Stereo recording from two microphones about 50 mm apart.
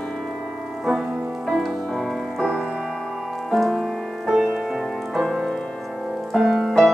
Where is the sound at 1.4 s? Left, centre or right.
Centre.